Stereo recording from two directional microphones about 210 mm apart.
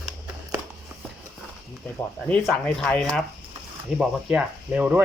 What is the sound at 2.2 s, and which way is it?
Speech, 5° left (ahead or behind).